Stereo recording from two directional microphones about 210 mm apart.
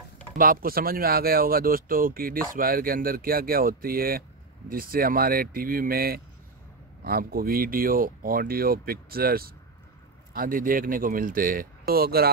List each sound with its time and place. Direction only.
0.4 s speech: 45° right (ahead or behind)